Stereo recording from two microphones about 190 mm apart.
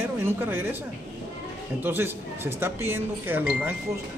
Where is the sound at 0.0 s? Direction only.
10° right (ahead or behind).